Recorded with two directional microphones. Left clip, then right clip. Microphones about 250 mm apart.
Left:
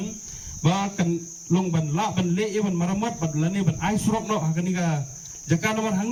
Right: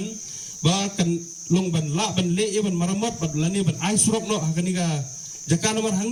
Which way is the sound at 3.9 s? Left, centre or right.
Right.